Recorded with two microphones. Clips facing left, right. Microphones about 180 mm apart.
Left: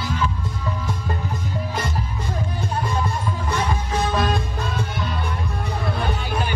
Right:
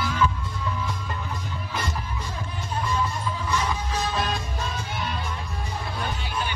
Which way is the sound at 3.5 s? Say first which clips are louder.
Left 3 dB; 55° left (ahead or behind).